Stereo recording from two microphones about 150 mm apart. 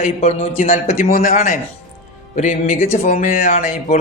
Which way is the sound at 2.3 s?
55° left (ahead or behind).